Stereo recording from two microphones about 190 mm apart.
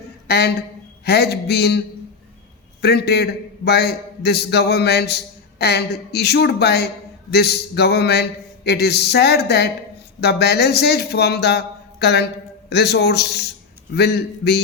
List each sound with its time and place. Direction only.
0.3 s a man's voice: 60° left (ahead or behind)
2.8 s a man's voice: 60° left (ahead or behind)